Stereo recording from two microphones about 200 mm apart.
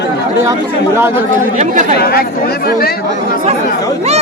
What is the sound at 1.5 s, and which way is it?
Speech, 35° right (ahead or behind).